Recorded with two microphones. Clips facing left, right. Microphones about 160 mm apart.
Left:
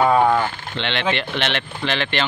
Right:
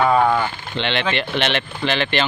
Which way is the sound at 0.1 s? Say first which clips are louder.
Even; 5° left (ahead or behind).